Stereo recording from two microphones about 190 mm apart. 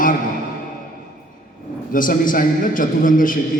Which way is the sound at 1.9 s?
45° left (ahead or behind).